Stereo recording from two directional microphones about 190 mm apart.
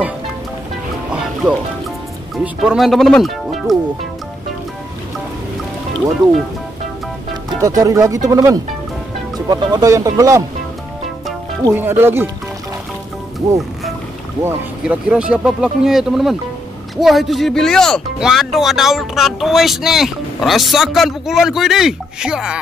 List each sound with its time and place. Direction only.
2.4 s speech: 5° right (ahead or behind)
6.2 s speech: centre (ahead or behind)
7.6 s speech: 15° right (ahead or behind)
11.6 s speech: 10° right (ahead or behind)
14.4 s speech: 5° right (ahead or behind)